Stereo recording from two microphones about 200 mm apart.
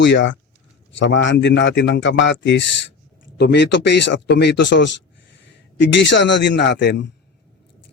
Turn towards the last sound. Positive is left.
turn(degrees=60)  # may be behind; listen again after turning